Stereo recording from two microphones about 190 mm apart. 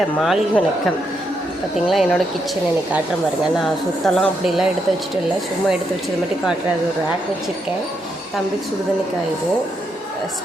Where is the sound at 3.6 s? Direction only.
5° left (ahead or behind).